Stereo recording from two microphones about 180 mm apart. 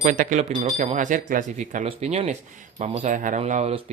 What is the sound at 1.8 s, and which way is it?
Speech, 35° right (ahead or behind).